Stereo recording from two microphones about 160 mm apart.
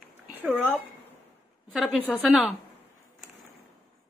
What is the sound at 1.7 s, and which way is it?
Speech, centre (ahead or behind).